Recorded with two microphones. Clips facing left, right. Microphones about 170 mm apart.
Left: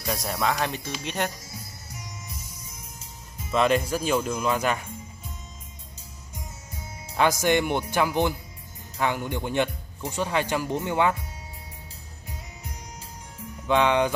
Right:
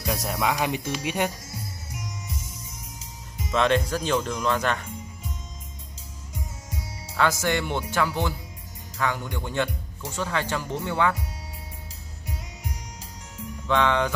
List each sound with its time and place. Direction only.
0.0 s speech: centre (ahead or behind)
0.4 s speech: 15° right (ahead or behind)
3.5 s speech: 10° left (ahead or behind)
7.2 s speech: 15° left (ahead or behind)
13.7 s speech: 15° left (ahead or behind)